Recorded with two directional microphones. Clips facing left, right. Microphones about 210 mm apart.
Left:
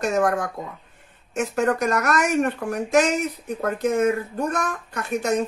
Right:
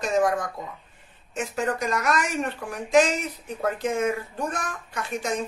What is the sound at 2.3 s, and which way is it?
Speech, 50° left (ahead or behind).